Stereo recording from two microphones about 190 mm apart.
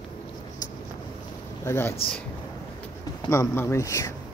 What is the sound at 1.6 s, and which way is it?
Speech, 15° left (ahead or behind).